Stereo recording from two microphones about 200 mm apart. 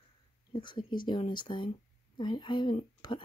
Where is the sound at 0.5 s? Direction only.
25° left (ahead or behind).